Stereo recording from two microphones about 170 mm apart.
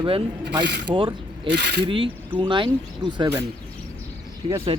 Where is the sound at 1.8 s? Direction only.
30° right (ahead or behind).